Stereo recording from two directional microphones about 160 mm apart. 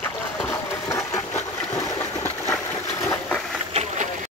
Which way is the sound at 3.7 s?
50° right (ahead or behind).